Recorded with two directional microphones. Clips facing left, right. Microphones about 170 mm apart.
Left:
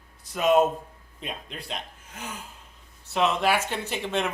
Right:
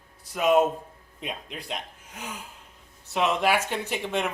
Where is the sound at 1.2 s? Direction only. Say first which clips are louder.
Right 1 dB; 15° right (ahead or behind).